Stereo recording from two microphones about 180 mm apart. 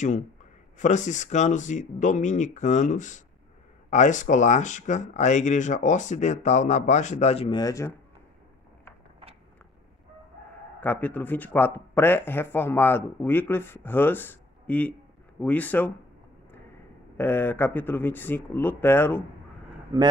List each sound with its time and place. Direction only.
0.7 s speech: 40° left (ahead or behind)
7.5 s speech: 20° left (ahead or behind)
10.8 s speech: 10° left (ahead or behind)
17.2 s speech: 10° left (ahead or behind)
19.9 s speech: 20° right (ahead or behind)